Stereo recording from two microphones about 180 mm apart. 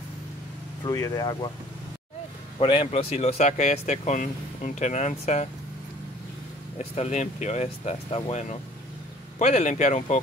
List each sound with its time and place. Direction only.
0.8 s speech: 20° left (ahead or behind)
2.6 s speech: 30° left (ahead or behind)
6.8 s speech: 40° left (ahead or behind)